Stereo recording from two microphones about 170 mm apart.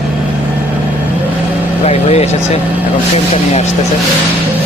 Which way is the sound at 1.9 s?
40° left (ahead or behind).